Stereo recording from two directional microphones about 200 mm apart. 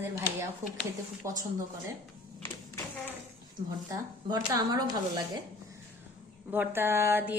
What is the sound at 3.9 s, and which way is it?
A woman's voice, 20° right (ahead or behind).